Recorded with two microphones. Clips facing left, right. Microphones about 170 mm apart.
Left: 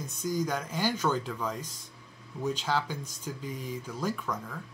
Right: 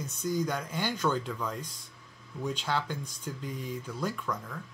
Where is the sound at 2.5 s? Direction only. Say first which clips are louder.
Left 2 dB; 5° left (ahead or behind).